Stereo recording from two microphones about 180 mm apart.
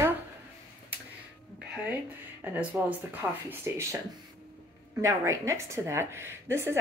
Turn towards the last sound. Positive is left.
turn(degrees=-15)  # may be behind; listen again after turning